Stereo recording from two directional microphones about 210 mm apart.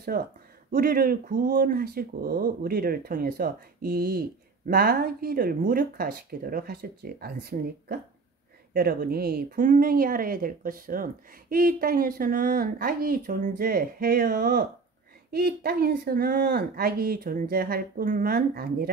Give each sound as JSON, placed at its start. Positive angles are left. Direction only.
{"t": 0.1, "sound": "speech", "side_deg": -45}